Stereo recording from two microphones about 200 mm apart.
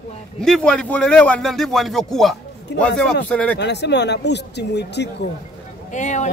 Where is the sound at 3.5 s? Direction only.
60° left (ahead or behind).